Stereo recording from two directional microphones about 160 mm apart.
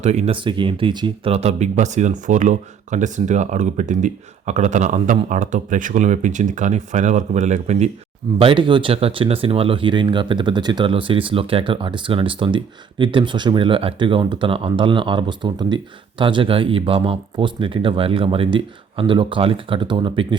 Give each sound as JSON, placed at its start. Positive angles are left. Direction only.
{"t": 0.0, "sound": "speech", "side_deg": -45}
{"t": 0.3, "sound": "speech", "side_deg": -30}
{"t": 8.4, "sound": "speech", "side_deg": -30}